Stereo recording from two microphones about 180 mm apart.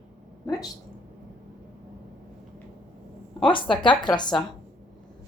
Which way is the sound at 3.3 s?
30° left (ahead or behind).